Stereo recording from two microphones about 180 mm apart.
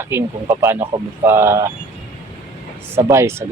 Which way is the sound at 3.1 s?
15° right (ahead or behind).